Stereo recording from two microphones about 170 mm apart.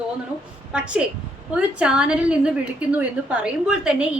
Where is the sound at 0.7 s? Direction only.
5° right (ahead or behind).